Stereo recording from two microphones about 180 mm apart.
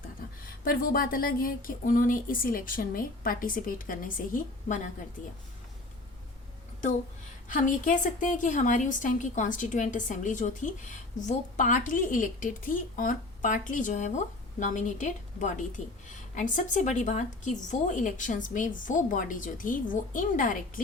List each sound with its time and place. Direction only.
0.2 s a sound: 55° left (ahead or behind)
0.6 s a woman's voice: 50° left (ahead or behind)
7.4 s a woman's voice: 45° left (ahead or behind)